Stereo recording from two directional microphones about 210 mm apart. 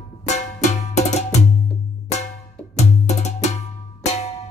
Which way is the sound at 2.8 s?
30° left (ahead or behind).